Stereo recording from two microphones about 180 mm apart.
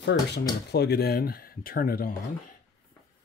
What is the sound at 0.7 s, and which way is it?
Speech, 65° left (ahead or behind).